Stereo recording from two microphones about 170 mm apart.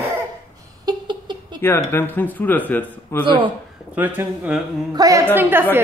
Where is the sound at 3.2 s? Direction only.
30° right (ahead or behind).